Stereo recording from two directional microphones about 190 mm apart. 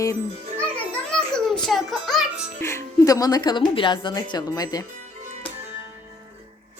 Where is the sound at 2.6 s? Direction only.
15° left (ahead or behind).